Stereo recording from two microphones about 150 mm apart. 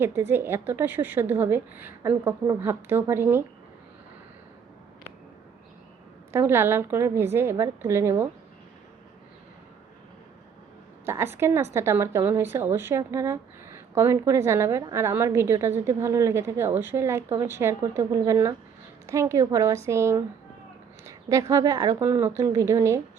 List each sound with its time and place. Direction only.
0.0 s a woman's voice: 15° right (ahead or behind)
6.3 s a woman's voice: 15° right (ahead or behind)
11.0 s a woman's voice: 15° right (ahead or behind)